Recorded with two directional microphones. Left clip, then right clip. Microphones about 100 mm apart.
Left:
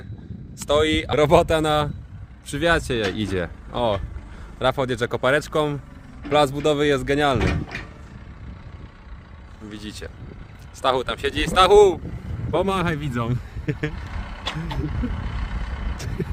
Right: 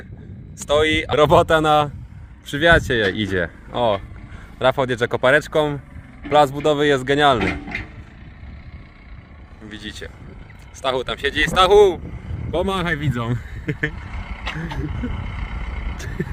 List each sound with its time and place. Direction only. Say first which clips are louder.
0.5 s speech: right 2 dB; 10° right (ahead or behind)
1.2 s speech: right 3 dB; 30° right (ahead or behind)
1.5 s speech: right 5 dB; 10° right (ahead or behind)
5.5 s speech: right 3 dB; centre (ahead or behind)
7.0 s speech: right 5 dB; 10° right (ahead or behind)
7.5 s a sound: right 3 dB; 25° left (ahead or behind)
9.6 s speech: right 3 dB; 15° right (ahead or behind)
14.1 s vehicle: right 1 dB; 40° left (ahead or behind)
16.0 s frog: right 2 dB; 10° right (ahead or behind)